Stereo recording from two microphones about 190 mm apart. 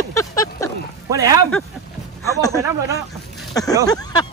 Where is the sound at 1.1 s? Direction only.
20° right (ahead or behind).